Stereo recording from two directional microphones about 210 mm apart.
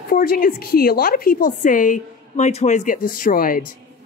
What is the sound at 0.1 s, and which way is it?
A woman's voice, 45° left (ahead or behind).